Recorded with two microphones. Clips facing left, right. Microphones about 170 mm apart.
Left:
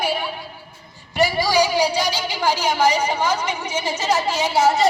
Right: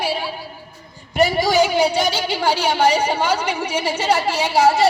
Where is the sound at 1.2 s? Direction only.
20° right (ahead or behind).